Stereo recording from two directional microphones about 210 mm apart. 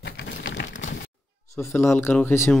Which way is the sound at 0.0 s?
55° left (ahead or behind).